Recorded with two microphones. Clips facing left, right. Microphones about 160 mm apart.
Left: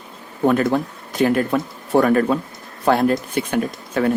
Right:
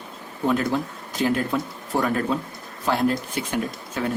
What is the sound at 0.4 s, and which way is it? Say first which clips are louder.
Speech: left 5 dB; 55° left (ahead or behind).